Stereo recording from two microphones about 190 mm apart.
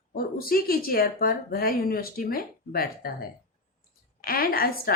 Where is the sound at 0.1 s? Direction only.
50° left (ahead or behind).